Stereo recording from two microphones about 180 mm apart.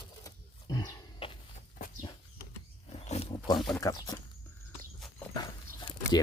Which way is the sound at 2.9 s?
35° left (ahead or behind).